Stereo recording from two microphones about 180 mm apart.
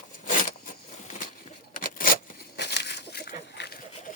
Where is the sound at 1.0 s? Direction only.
45° left (ahead or behind); by 3.7 s 70° left (ahead or behind).